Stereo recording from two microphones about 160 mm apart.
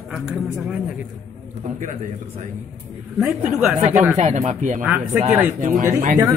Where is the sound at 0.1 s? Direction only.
5° right (ahead or behind).